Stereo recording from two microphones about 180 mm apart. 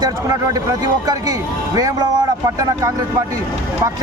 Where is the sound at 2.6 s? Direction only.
15° right (ahead or behind).